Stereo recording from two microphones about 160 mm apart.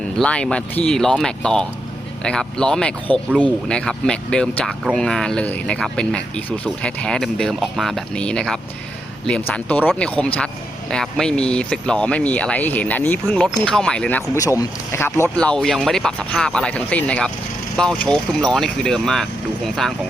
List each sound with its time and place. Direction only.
0.2 s speech: 5° left (ahead or behind)
14.3 s speech: 20° left (ahead or behind)
15.4 s speech: 5° left (ahead or behind)